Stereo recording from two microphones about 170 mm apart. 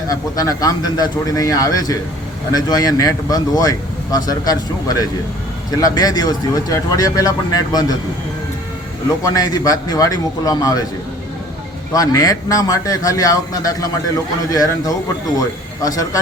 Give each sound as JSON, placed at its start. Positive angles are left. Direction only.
{"t": 0.1, "sound": "speech", "side_deg": 20}
{"t": 9.0, "sound": "speech", "side_deg": 20}
{"t": 11.9, "sound": "speech", "side_deg": 20}